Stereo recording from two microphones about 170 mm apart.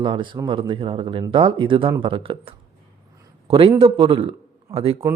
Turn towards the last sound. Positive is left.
turn(degrees=-35)  # may be behind; listen again after turning